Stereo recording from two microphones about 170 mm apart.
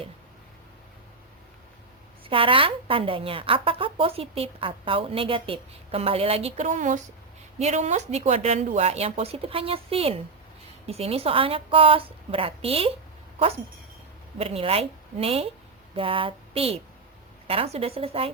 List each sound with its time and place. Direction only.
2.2 s a woman's voice: 30° right (ahead or behind)
14.3 s a woman's voice: 35° right (ahead or behind)